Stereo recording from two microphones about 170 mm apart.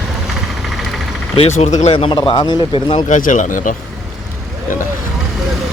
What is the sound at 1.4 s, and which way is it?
Speech, 40° left (ahead or behind).